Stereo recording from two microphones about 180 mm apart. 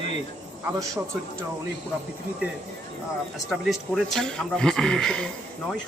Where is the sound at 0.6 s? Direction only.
15° right (ahead or behind).